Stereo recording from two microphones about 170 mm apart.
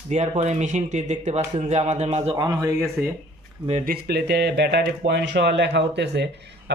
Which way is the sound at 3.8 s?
70° right (ahead or behind).